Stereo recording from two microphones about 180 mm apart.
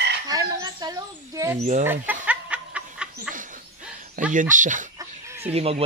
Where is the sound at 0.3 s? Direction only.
20° right (ahead or behind).